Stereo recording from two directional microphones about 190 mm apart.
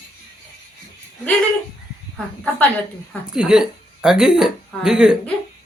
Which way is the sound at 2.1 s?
5° left (ahead or behind).